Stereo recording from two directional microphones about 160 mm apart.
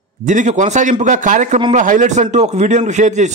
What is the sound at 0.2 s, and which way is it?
A man's voice, 50° right (ahead or behind).